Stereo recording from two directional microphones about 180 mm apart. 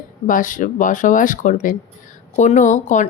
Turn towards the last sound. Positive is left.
turn(degrees=45)  # may be behind; listen again after turning